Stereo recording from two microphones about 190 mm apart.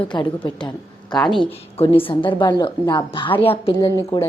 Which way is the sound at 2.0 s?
25° left (ahead or behind).